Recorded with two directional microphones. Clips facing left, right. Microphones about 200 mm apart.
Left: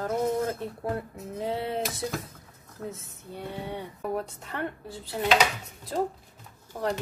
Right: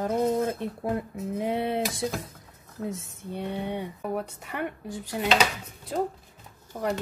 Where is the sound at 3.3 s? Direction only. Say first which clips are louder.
Right 4 dB; 20° right (ahead or behind).